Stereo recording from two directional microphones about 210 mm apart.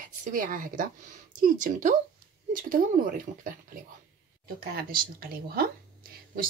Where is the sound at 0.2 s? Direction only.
40° right (ahead or behind).